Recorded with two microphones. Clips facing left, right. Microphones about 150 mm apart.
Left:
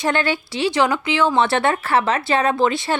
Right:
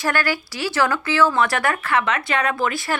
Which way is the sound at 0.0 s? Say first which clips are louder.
Left 2 dB; 25° left (ahead or behind).